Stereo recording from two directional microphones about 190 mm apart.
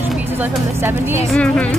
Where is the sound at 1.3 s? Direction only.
5° left (ahead or behind).